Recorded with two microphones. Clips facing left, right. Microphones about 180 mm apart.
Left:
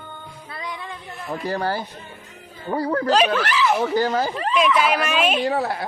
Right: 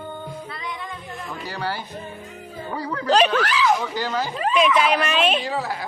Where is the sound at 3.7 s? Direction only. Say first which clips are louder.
Left 5 dB; 50° left (ahead or behind).